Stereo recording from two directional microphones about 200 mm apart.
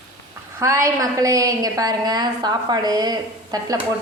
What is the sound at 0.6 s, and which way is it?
A woman's voice, 15° right (ahead or behind).